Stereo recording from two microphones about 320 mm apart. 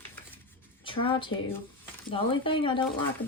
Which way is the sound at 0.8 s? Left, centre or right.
Centre.